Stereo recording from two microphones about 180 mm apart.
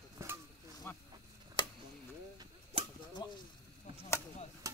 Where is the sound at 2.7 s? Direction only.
30° right (ahead or behind).